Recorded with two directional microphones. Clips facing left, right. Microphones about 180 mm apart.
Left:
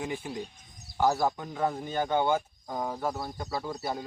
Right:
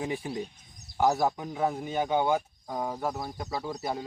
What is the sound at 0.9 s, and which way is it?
Speech, 20° right (ahead or behind).